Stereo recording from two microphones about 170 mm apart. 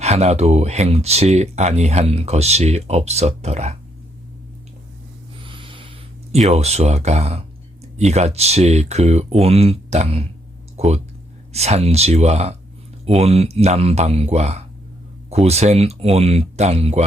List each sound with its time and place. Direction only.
0.0 s speech: 40° right (ahead or behind)
5.4 s a sound: 30° right (ahead or behind)
6.3 s speech: 40° right (ahead or behind)